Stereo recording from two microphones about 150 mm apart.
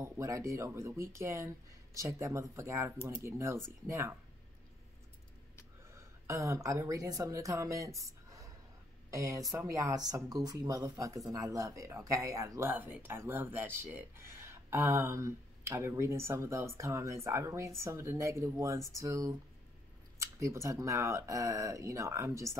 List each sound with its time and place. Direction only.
0.0 s speech: 20° right (ahead or behind)
5.9 s speech: 20° right (ahead or behind)